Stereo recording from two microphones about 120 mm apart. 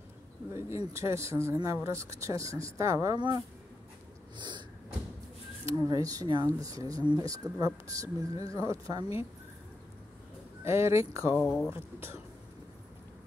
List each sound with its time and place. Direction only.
0.5 s speech: 25° right (ahead or behind)
4.4 s a sound: 40° right (ahead or behind)
5.7 s speech: 30° right (ahead or behind)
10.6 s speech: 20° right (ahead or behind)
11.4 s speech: 5° left (ahead or behind)
11.7 s speech: 20° right (ahead or behind)